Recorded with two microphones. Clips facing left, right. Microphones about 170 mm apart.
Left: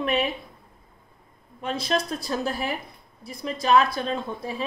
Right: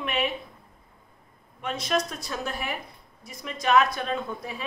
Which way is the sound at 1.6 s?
35° left (ahead or behind).